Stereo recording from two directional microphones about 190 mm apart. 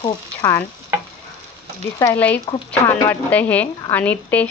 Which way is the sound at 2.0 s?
10° left (ahead or behind).